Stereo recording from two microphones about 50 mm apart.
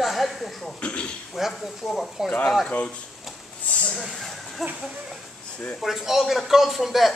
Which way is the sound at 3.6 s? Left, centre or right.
Left.